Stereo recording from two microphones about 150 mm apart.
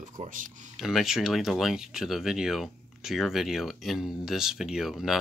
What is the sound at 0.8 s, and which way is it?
Speech, 5° right (ahead or behind).